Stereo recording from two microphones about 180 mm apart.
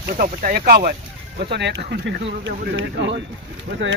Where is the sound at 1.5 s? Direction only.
70° right (ahead or behind).